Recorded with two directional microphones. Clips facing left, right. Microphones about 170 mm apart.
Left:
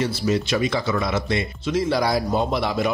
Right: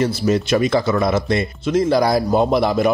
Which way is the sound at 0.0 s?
50° right (ahead or behind).